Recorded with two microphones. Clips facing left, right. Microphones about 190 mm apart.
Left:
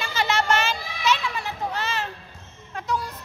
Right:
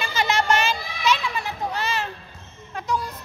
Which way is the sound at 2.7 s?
15° right (ahead or behind).